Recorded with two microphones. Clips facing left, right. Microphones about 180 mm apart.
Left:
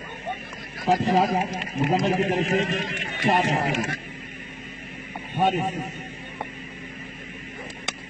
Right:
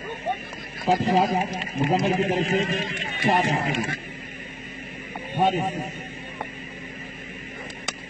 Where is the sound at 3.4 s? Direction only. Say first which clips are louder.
Left 1 dB; 40° left (ahead or behind).